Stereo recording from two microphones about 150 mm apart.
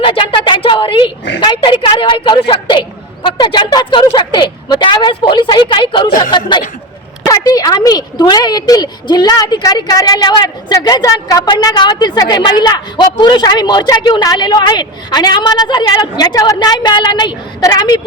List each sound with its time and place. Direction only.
0.0 s a woman's voice: 35° left (ahead or behind)
7.3 s a woman's voice: 25° left (ahead or behind)